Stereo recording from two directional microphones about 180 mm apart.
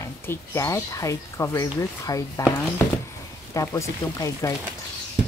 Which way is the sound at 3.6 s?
20° left (ahead or behind).